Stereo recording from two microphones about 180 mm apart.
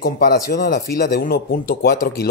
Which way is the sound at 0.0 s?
60° left (ahead or behind).